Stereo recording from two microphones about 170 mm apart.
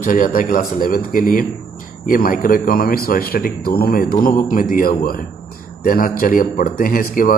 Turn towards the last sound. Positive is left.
turn(degrees=55)  # may be behind; listen again after turning